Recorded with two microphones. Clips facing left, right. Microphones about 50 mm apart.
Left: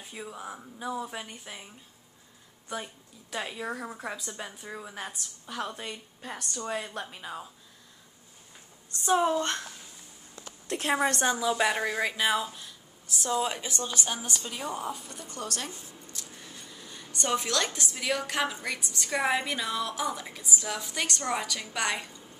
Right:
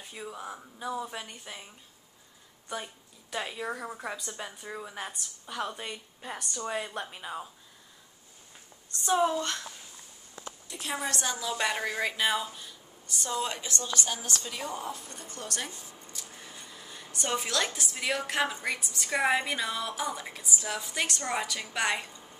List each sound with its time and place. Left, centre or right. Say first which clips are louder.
0.0 s a woman's voice: even; centre
2.7 s a woman's voice: left 1 dB; centre
9.0 s a woman's voice: left 1 dB; centre
10.7 s a woman's voice: left 7 dB; left
11.3 s a woman's voice: left 4 dB; centre
13.6 s a woman's voice: even; centre